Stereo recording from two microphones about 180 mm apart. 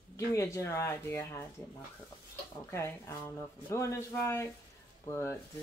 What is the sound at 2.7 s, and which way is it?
Speech, 15° left (ahead or behind).